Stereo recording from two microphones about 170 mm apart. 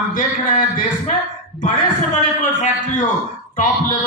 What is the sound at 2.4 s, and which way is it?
A man's voice, 45° left (ahead or behind).